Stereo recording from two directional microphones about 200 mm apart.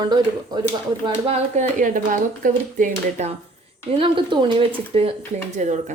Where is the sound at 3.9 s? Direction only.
25° right (ahead or behind).